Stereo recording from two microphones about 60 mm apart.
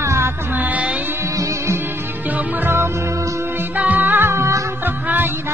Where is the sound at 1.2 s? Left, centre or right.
Right.